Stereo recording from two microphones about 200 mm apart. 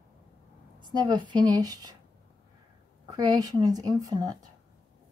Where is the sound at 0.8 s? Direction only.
20° right (ahead or behind).